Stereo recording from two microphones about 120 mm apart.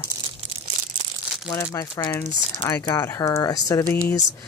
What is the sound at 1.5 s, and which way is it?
Speech, 30° left (ahead or behind).